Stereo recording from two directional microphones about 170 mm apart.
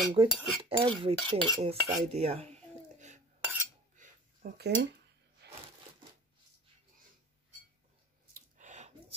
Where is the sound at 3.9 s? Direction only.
65° right (ahead or behind).